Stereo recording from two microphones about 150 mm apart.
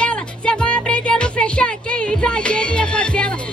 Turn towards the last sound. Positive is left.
turn(degrees=5)  # may be behind; listen again after turning